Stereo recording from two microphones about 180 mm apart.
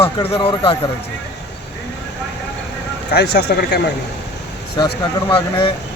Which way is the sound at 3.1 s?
65° left (ahead or behind).